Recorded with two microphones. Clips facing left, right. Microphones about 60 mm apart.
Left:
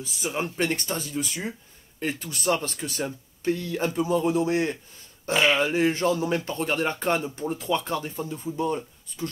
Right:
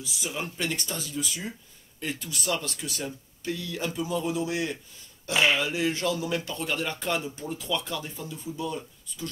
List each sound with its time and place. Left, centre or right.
0.0 s speech: left
5.3 s speech: centre
5.6 s speech: left